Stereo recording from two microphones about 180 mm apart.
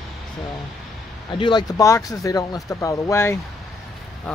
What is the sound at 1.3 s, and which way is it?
Speech, 25° left (ahead or behind).